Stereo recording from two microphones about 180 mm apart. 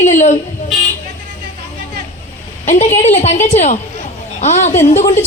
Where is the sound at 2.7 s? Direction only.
40° left (ahead or behind).